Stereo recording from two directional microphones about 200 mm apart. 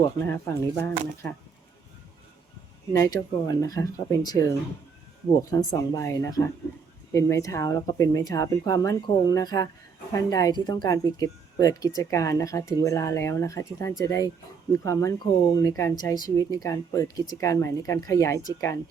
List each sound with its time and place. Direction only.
0.3 s speech: 15° left (ahead or behind)
2.9 s speech: 15° left (ahead or behind)